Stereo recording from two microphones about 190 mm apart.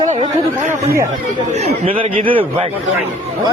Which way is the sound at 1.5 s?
35° right (ahead or behind).